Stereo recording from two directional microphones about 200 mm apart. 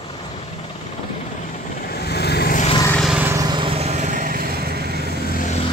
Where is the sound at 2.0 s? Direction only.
55° left (ahead or behind).